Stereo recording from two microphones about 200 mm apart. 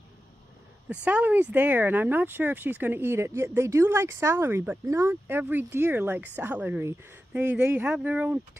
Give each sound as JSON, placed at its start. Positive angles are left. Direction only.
{"t": 1.0, "sound": "speech", "side_deg": -5}